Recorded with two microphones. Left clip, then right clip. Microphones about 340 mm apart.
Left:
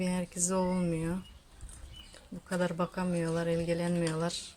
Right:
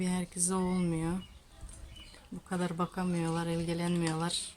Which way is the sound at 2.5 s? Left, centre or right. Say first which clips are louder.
Left 3 dB; centre.